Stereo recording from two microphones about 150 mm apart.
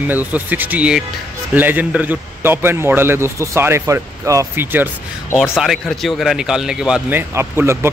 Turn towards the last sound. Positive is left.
turn(degrees=-15)  # may be behind; listen again after turning